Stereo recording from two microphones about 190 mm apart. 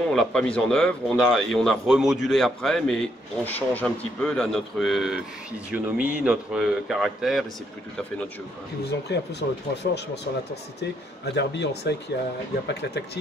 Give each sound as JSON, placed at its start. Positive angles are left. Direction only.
{"t": 0.1, "sound": "a man's voice", "side_deg": 5}
{"t": 8.8, "sound": "speech", "side_deg": 60}